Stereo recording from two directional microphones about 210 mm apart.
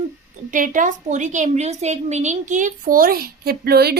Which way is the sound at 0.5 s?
40° right (ahead or behind).